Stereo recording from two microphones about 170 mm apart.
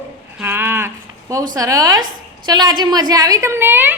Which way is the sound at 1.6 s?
20° right (ahead or behind).